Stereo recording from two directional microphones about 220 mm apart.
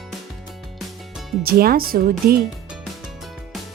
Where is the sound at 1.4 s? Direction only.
45° right (ahead or behind).